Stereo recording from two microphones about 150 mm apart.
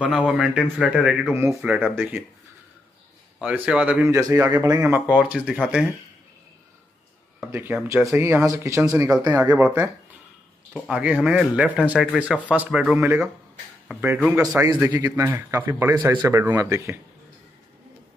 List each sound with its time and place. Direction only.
0.0 s speech: 5° right (ahead or behind)
1.3 s speech: 15° right (ahead or behind)
1.6 s speech: centre (ahead or behind)
3.3 s speech: 5° right (ahead or behind)
4.6 s speech: 25° right (ahead or behind)
4.8 s speech: 10° right (ahead or behind)
7.4 s speech: 5° right (ahead or behind)
8.1 s speech: 15° right (ahead or behind)